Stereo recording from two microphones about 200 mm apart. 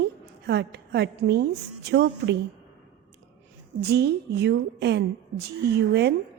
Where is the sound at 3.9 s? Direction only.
55° right (ahead or behind).